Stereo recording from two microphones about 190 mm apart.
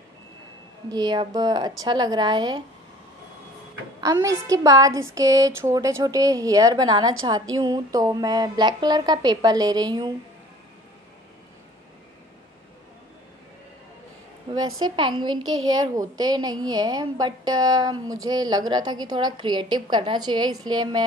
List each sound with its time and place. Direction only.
0.8 s a woman's voice: 20° right (ahead or behind)
4.0 s a woman's voice: 15° right (ahead or behind)
14.5 s a sound: 30° right (ahead or behind)
14.8 s a woman's voice: 25° right (ahead or behind)